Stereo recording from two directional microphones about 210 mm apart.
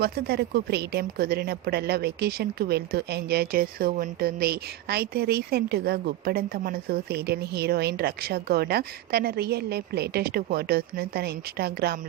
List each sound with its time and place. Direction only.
0.0 s a woman's voice: 50° right (ahead or behind)